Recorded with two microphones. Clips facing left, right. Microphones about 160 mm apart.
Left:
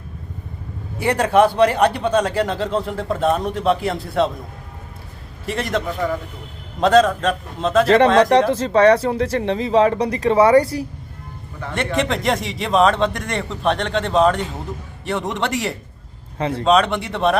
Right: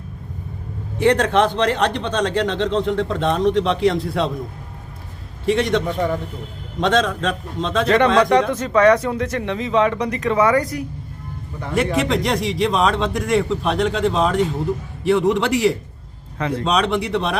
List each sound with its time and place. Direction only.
0.9 s speech: 10° left (ahead or behind)
5.5 s a man's voice: centre (ahead or behind)
7.9 s speech: 30° left (ahead or behind)
11.7 s a man's voice: centre (ahead or behind)